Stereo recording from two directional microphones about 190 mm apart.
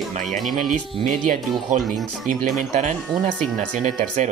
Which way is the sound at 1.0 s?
40° right (ahead or behind).